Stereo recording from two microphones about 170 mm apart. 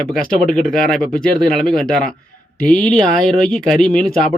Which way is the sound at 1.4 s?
5° left (ahead or behind).